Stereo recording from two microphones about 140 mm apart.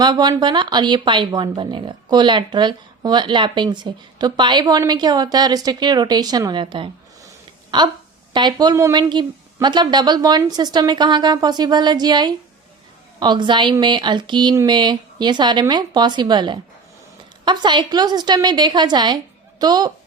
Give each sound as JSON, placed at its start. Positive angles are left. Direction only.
{"t": 0.0, "sound": "a woman's voice", "side_deg": -30}
{"t": 8.3, "sound": "a woman's voice", "side_deg": -30}